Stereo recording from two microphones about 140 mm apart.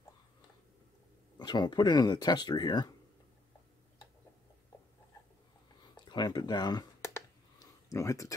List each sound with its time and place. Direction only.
1.4 s speech: 30° left (ahead or behind)
5.9 s speech: 30° left (ahead or behind)
7.2 s a sound: 20° left (ahead or behind)